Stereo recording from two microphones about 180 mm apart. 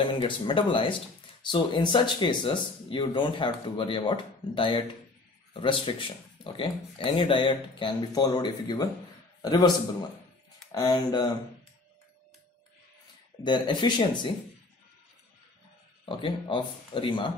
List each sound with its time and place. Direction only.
0.0 s a man's voice: 30° left (ahead or behind)
10.7 s speech: 20° left (ahead or behind)
13.4 s speech: 25° left (ahead or behind)
16.1 s speech: 30° left (ahead or behind)